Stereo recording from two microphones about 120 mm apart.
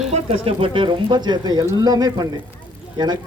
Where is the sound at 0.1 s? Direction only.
55° right (ahead or behind).